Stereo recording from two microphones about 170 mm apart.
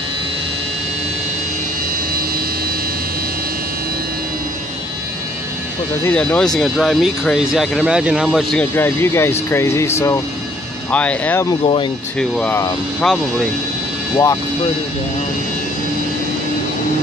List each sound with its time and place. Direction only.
6.0 s speech: 10° left (ahead or behind)
8.7 s speech: 15° left (ahead or behind)
11.6 s speech: 30° left (ahead or behind)
12.2 s speech: 5° left (ahead or behind)
14.1 s speech: 20° left (ahead or behind)